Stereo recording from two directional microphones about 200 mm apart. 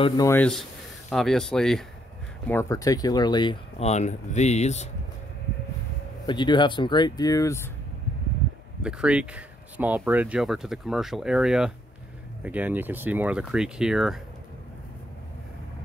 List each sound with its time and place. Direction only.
0.0 s speech: 15° left (ahead or behind)
2.4 s speech: 15° left (ahead or behind); by 4.8 s 35° left (ahead or behind)
6.2 s speech: 25° left (ahead or behind)
8.8 s speech: 5° right (ahead or behind)